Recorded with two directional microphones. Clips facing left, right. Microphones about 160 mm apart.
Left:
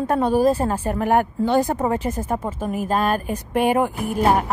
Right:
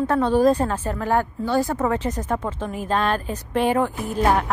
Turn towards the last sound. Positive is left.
turn(degrees=10)  # may be behind; listen again after turning